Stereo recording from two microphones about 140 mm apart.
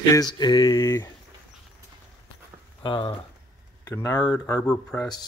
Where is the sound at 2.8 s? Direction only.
35° left (ahead or behind).